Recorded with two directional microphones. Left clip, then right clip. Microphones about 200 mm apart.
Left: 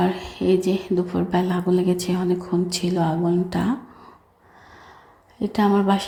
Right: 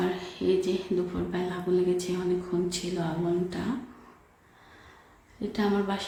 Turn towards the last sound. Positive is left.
turn(degrees=35)  # may be behind; listen again after turning